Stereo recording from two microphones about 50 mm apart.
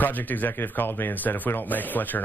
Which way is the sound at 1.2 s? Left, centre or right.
Left.